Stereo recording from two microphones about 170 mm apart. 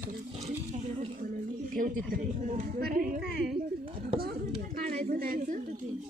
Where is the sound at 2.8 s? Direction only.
55° right (ahead or behind).